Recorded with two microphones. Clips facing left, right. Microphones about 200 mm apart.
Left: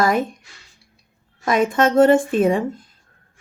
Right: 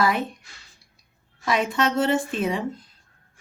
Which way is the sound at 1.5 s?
50° left (ahead or behind).